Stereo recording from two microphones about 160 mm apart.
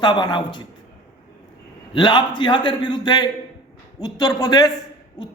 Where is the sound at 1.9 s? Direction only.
30° left (ahead or behind).